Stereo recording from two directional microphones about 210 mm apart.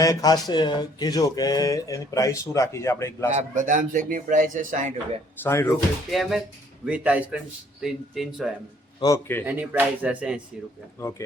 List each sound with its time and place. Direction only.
0.0 s speech: 15° left (ahead or behind)
3.3 s a man's voice: 35° right (ahead or behind)
5.4 s speech: 10° left (ahead or behind)
6.1 s speech: centre (ahead or behind)
9.0 s a man's voice: 15° left (ahead or behind)
9.5 s speech: 10° right (ahead or behind)